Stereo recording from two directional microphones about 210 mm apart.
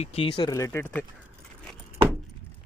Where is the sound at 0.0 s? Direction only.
25° left (ahead or behind).